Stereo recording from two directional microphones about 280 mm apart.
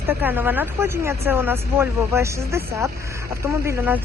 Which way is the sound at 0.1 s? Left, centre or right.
Centre.